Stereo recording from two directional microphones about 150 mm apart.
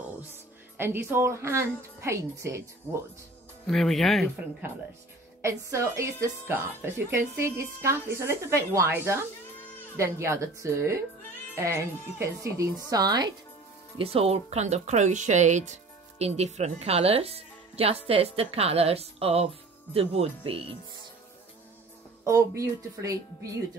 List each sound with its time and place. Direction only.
0.7 s a woman's voice: 15° right (ahead or behind)
3.6 s speech: centre (ahead or behind)
5.4 s a woman's voice: 20° right (ahead or behind)
13.9 s speech: 40° right (ahead or behind)
22.6 s speech: 20° right (ahead or behind)